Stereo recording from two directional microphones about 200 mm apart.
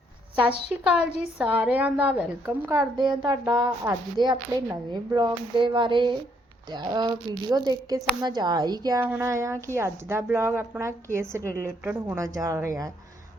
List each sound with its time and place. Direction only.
0.7 s a woman's voice: 5° right (ahead or behind)